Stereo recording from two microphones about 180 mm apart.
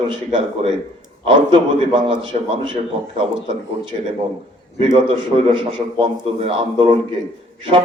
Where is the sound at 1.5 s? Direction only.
25° right (ahead or behind).